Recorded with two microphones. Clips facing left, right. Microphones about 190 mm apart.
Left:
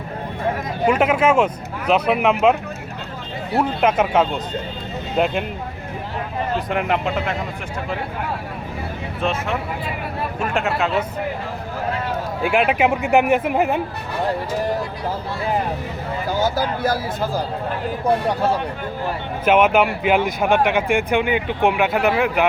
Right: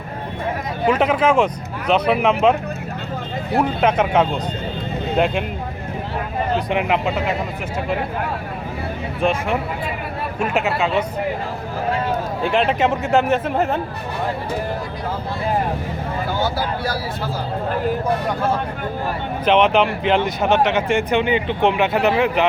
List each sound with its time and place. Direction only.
0.9 s speech: 10° left (ahead or behind)
3.8 s speech: 5° left (ahead or behind)
6.7 s speech: 5° right (ahead or behind)
9.2 s speech: 10° right (ahead or behind)
12.4 s speech: 10° left (ahead or behind)
16.4 s speech: 45° left (ahead or behind)
19.5 s speech: 5° left (ahead or behind)